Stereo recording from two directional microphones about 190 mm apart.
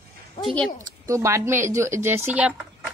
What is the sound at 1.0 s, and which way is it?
Speech, 15° right (ahead or behind).